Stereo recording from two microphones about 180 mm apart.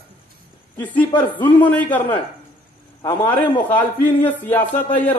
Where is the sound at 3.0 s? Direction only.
10° left (ahead or behind).